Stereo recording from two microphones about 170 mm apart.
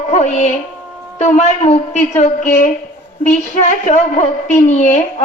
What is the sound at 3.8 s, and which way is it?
A woman's voice, 45° left (ahead or behind).